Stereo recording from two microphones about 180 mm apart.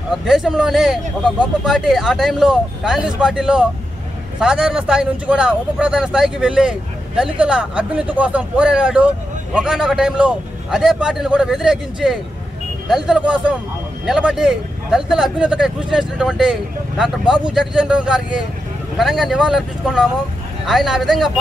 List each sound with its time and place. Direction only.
0.2 s speech: 5° right (ahead or behind)